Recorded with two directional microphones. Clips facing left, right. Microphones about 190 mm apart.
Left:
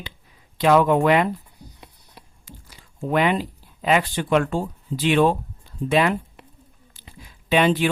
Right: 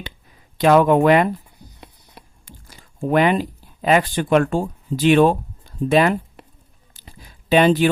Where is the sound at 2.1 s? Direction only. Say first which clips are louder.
Right 1 dB; 45° right (ahead or behind).